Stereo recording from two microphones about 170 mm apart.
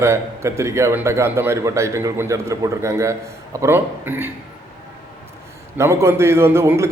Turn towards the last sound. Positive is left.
turn(degrees=-15)  # may be behind; listen again after turning